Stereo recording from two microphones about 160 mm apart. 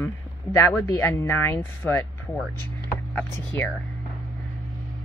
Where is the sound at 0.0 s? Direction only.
15° left (ahead or behind).